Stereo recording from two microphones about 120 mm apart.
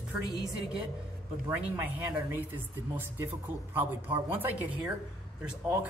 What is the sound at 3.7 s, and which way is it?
A man's voice, 15° right (ahead or behind).